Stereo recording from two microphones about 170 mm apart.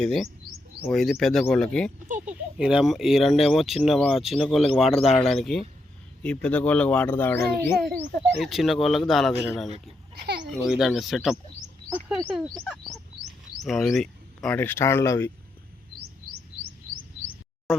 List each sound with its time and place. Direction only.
0.0 s speech: 5° left (ahead or behind)
0.5 s bird: 25° right (ahead or behind)
0.8 s speech: centre (ahead or behind)
7.9 s speech: centre (ahead or behind)
10.2 s a sound: 80° right
10.7 s speech: centre (ahead or behind)
12.5 s bird: centre (ahead or behind)
13.6 s speech: centre (ahead or behind)
17.7 s a sound: centre (ahead or behind)